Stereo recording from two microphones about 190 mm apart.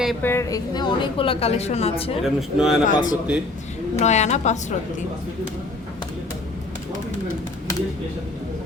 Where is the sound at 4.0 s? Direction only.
35° left (ahead or behind).